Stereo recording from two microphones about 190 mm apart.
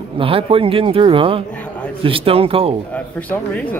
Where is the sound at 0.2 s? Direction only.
30° right (ahead or behind).